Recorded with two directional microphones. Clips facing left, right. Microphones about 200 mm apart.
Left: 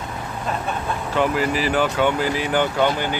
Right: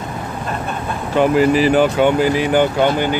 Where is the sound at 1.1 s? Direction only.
20° right (ahead or behind).